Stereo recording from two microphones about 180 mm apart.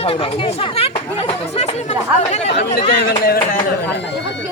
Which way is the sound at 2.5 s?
70° left (ahead or behind).